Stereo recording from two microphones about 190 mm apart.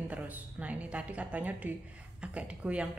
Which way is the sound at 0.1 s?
5° right (ahead or behind).